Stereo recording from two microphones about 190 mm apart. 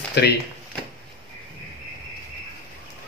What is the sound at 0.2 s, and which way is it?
Speech, 65° left (ahead or behind).